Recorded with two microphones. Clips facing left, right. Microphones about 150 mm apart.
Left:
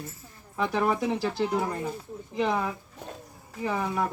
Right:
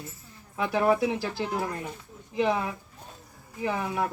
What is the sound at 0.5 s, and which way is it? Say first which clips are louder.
Speech: right 2 dB; 5° right (ahead or behind).